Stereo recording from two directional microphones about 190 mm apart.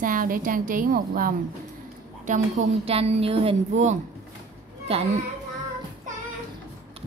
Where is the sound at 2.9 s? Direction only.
30° right (ahead or behind).